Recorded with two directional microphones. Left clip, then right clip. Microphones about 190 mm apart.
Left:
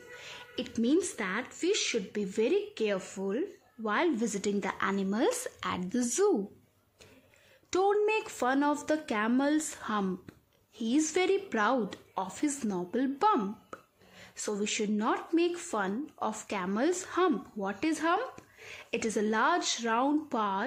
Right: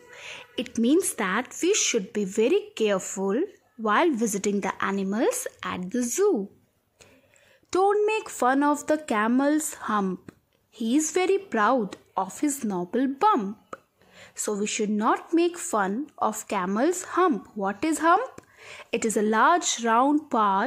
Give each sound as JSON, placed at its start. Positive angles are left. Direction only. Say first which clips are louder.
{"t": 0.1, "sound": "a woman's voice", "louder": "right 6 dB", "side_deg": -25}
{"t": 7.7, "sound": "a woman's voice", "louder": "right 5 dB", "side_deg": -20}